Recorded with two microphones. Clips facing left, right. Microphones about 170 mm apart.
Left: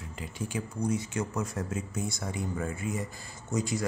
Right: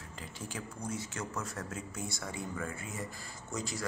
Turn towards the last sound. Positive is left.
turn(degrees=20)  # may be behind; listen again after turning